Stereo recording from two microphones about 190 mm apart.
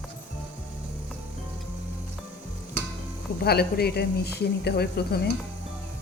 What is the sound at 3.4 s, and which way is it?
A woman's voice, 55° left (ahead or behind).